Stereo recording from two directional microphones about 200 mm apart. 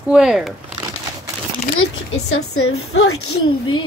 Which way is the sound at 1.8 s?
90° left.